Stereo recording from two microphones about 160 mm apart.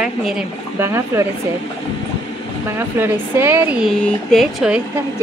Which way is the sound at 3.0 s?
15° right (ahead or behind).